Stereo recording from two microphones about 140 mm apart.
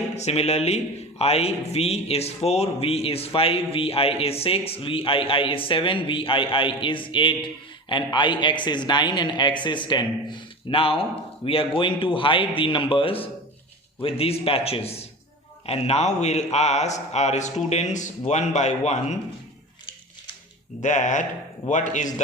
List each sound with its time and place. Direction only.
0.2 s a man's voice: 50° left (ahead or behind)
20.8 s a man's voice: 60° left (ahead or behind)